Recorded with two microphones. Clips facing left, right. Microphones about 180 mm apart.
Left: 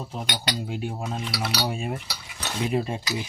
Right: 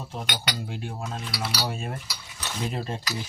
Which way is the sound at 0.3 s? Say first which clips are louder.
Left 3 dB; 15° left (ahead or behind).